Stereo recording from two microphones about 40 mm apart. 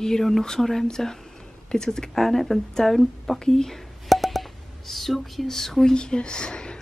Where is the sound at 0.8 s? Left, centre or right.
Centre.